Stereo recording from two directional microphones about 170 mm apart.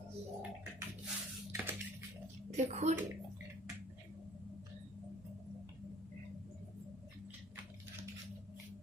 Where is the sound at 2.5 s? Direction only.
40° right (ahead or behind).